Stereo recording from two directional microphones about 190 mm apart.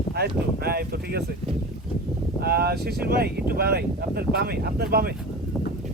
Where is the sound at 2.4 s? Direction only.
55° right (ahead or behind).